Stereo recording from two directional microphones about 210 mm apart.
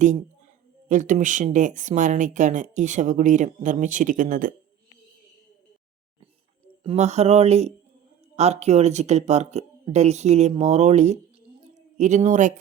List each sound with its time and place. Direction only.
0.9 s speech: 35° right (ahead or behind)
6.8 s speech: 30° right (ahead or behind)